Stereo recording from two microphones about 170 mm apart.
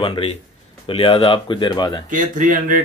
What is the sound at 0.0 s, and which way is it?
Speech, 30° left (ahead or behind).